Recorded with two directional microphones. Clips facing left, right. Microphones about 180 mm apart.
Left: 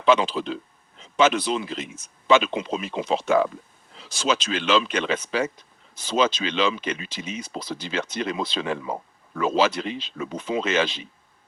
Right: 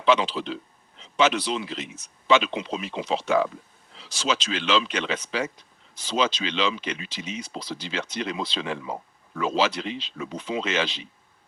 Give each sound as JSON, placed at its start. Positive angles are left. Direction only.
{"t": 0.0, "sound": "speech", "side_deg": 50}